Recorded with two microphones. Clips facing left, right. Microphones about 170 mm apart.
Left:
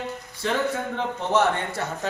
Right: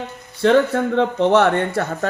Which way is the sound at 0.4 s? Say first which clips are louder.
Right 10 dB; 65° right (ahead or behind).